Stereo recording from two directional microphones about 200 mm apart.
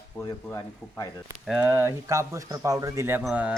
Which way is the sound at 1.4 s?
10° right (ahead or behind).